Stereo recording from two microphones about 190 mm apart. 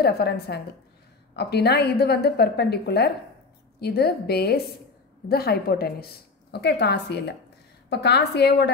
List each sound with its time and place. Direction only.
0.0 s a woman's voice: 55° left (ahead or behind)